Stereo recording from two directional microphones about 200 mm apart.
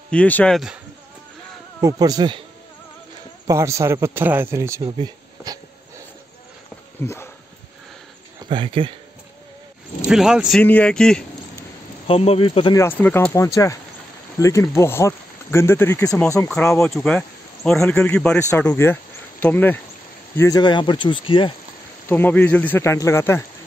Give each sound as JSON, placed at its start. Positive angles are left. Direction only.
{"t": 0.1, "sound": "speech", "side_deg": 5}
{"t": 1.8, "sound": "speech", "side_deg": -15}
{"t": 3.4, "sound": "a man's voice", "side_deg": -15}
{"t": 4.9, "sound": "a sound", "side_deg": -20}
{"t": 7.0, "sound": "speech", "side_deg": 15}
{"t": 8.5, "sound": "speech", "side_deg": -25}
{"t": 10.0, "sound": "speech", "side_deg": -5}
{"t": 12.1, "sound": "speech", "side_deg": 30}
{"t": 12.8, "sound": "speech", "side_deg": 10}
{"t": 22.1, "sound": "speech", "side_deg": 10}